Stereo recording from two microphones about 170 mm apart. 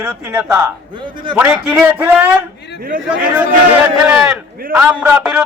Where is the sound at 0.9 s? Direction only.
30° right (ahead or behind).